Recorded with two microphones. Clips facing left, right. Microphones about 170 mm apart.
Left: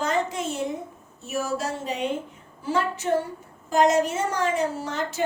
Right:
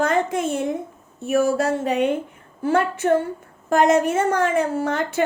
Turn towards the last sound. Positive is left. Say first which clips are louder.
# right 7 dB
turn(degrees=-55)  # may be behind; listen again after turning